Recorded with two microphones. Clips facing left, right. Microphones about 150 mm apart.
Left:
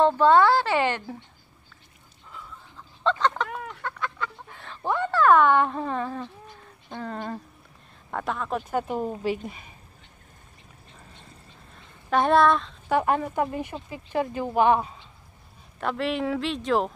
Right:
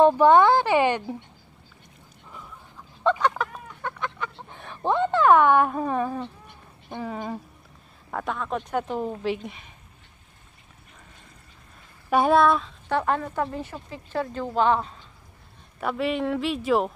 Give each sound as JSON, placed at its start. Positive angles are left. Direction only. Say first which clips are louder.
{"t": 0.0, "sound": "a woman's voice", "louder": "right 2 dB", "side_deg": -15}
{"t": 3.0, "sound": "fowl", "louder": "right 1 dB", "side_deg": -10}
{"t": 3.8, "sound": "chicken", "louder": "right 3 dB", "side_deg": -20}
{"t": 6.9, "sound": "a woman's voice", "louder": "right 1 dB", "side_deg": -10}
{"t": 12.1, "sound": "speech", "louder": "right 1 dB", "side_deg": -5}
{"t": 12.8, "sound": "speech", "louder": "left 3 dB", "side_deg": 10}
{"t": 15.8, "sound": "speech", "louder": "right 1 dB", "side_deg": 0}